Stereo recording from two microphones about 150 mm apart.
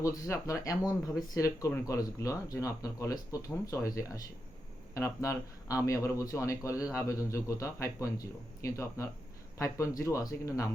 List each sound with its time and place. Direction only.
0.0 s speech: 20° left (ahead or behind)